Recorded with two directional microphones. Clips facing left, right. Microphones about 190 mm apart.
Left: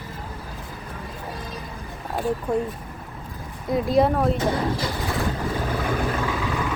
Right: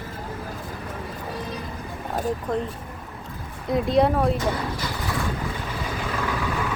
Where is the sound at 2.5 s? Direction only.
10° left (ahead or behind).